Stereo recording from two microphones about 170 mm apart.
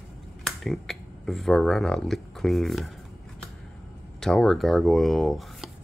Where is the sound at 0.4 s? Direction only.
Centre (ahead or behind).